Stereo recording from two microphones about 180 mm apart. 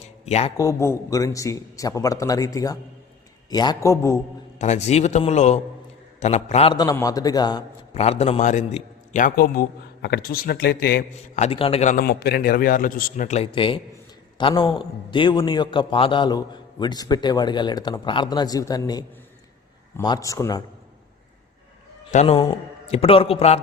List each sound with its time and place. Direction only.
0.3 s a man's voice: 35° left (ahead or behind)
0.5 s a man's voice: 20° left (ahead or behind)
4.5 s a man's voice: 40° left (ahead or behind)
6.7 s a man's voice: 20° left (ahead or behind)
7.9 s a man's voice: 35° left (ahead or behind); by 11.0 s 60° left (ahead or behind)
11.1 s a man's voice: 35° left (ahead or behind)
11.9 s a man's voice: 60° left (ahead or behind); by 20.6 s 20° left (ahead or behind)
22.1 s a man's voice: 40° left (ahead or behind)